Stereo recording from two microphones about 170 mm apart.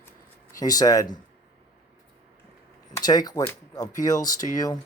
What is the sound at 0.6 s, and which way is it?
Speech, 20° left (ahead or behind).